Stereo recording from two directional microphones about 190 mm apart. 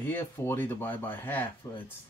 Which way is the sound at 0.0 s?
10° left (ahead or behind).